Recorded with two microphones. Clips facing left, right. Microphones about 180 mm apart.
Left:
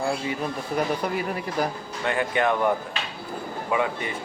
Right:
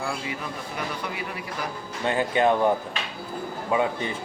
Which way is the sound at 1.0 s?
45° left (ahead or behind).